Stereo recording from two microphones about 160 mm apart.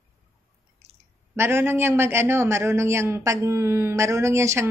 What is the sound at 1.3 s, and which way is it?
A man's voice, 15° right (ahead or behind).